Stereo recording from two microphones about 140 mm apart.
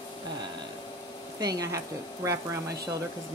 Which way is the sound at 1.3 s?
25° right (ahead or behind).